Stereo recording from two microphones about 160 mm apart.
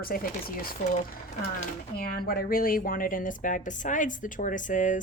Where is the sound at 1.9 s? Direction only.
70° left (ahead or behind).